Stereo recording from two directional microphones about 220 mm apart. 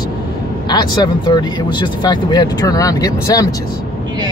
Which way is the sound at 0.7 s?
20° left (ahead or behind).